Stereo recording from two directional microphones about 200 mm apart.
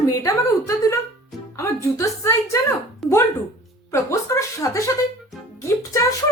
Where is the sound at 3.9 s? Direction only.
15° left (ahead or behind).